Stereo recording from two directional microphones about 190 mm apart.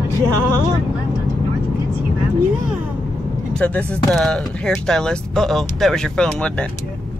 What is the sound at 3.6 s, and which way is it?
Speech, 5° left (ahead or behind).